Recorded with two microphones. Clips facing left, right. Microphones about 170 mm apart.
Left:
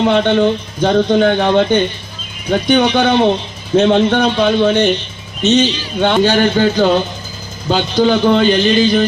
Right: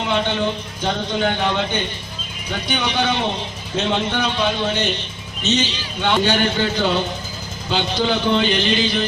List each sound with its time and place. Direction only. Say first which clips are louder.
0.1 s a man's voice: left 9 dB; 55° left (ahead or behind)